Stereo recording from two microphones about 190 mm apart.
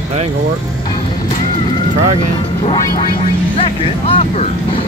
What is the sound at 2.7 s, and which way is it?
Vehicle, 20° left (ahead or behind).